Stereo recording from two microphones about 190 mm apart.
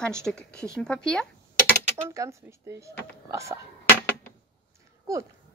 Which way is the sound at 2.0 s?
15° right (ahead or behind).